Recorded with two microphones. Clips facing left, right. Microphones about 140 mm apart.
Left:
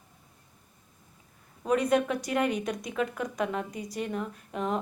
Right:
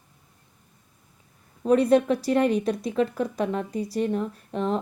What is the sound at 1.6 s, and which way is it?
Speech, 30° right (ahead or behind).